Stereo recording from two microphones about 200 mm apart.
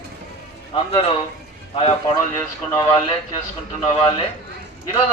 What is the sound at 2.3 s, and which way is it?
Speech, 15° left (ahead or behind).